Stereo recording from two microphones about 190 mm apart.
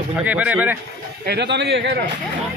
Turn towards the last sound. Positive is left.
turn(degrees=-60)  # may be behind; listen again after turning